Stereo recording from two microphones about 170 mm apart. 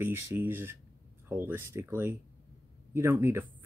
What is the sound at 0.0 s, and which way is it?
Speech, 15° right (ahead or behind).